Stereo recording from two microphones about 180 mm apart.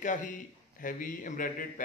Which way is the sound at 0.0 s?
45° left (ahead or behind).